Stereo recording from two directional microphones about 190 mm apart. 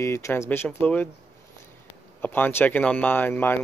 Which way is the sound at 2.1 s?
10° left (ahead or behind).